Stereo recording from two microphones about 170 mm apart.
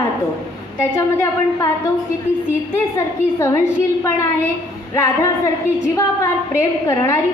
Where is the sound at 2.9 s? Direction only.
15° left (ahead or behind).